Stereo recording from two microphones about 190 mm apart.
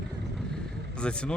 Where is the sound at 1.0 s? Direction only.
5° left (ahead or behind).